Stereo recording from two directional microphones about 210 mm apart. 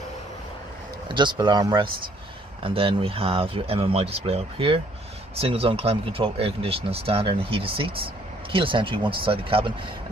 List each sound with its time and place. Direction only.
1.0 s speech: 20° right (ahead or behind)